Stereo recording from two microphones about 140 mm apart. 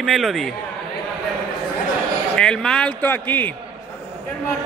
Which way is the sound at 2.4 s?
5° left (ahead or behind).